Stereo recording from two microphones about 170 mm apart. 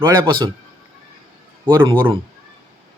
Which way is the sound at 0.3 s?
25° right (ahead or behind).